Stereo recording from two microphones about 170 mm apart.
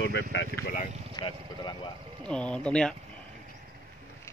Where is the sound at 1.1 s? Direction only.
25° left (ahead or behind).